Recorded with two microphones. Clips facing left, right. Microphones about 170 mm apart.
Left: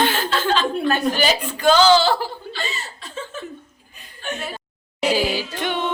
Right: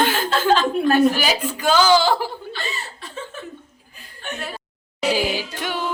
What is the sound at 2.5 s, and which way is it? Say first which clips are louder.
Chuckle: left 1 dB; 60° right (ahead or behind).